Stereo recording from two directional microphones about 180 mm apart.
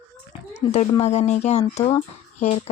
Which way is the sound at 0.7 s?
35° left (ahead or behind).